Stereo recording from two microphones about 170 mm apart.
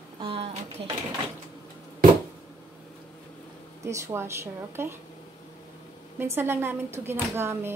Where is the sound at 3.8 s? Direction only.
15° right (ahead or behind).